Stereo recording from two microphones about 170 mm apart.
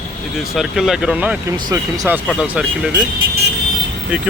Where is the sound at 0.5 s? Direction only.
Centre (ahead or behind).